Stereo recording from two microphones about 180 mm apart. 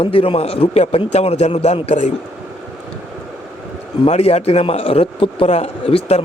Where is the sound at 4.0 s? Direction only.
35° left (ahead or behind).